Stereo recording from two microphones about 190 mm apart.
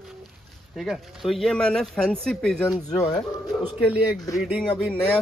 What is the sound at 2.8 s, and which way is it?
Speech, 20° left (ahead or behind).